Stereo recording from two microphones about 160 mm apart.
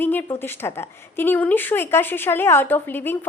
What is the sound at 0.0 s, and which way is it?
Speech, 10° left (ahead or behind).